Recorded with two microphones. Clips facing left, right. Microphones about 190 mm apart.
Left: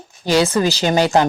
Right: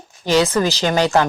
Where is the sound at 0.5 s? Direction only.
15° left (ahead or behind).